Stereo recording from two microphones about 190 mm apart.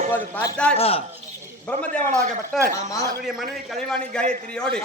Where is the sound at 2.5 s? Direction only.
Centre (ahead or behind).